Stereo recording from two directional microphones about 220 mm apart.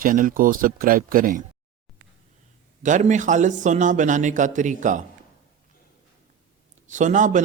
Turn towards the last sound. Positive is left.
turn(degrees=-35)  # may be behind; listen again after turning